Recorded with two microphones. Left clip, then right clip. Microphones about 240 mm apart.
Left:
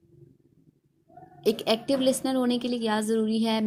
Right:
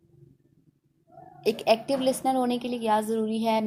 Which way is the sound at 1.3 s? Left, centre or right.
Left.